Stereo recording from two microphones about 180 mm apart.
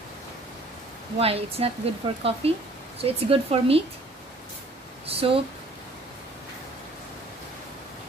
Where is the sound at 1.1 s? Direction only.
35° right (ahead or behind).